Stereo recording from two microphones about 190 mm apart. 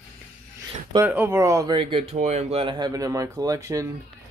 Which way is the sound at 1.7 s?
30° right (ahead or behind).